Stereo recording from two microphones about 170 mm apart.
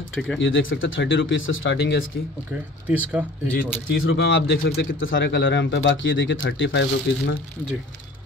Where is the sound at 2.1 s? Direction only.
75° left (ahead or behind).